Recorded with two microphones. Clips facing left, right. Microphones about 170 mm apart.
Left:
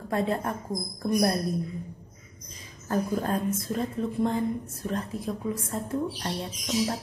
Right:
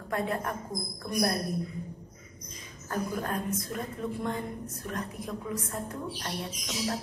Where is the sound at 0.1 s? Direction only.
30° left (ahead or behind).